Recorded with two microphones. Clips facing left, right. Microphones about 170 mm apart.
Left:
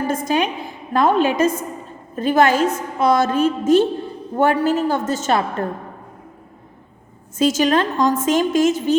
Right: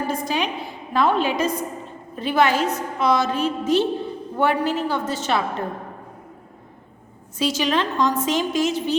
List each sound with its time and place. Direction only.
0.1 s a woman's voice: 45° left (ahead or behind)
7.3 s a woman's voice: 45° left (ahead or behind)